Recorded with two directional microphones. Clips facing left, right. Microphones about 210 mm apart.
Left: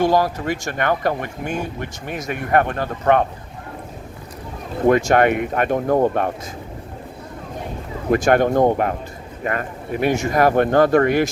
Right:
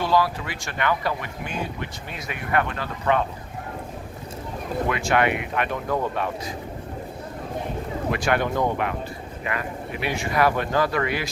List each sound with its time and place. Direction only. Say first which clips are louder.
0.0 s speech: left 5 dB; 45° left (ahead or behind)
4.9 s speech: left 9 dB; 45° left (ahead or behind)
8.1 s speech: left 9 dB; 45° left (ahead or behind)